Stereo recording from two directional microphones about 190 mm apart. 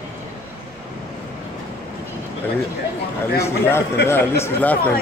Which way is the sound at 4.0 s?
60° left (ahead or behind).